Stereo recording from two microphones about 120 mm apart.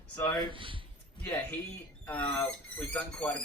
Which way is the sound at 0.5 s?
45° right (ahead or behind).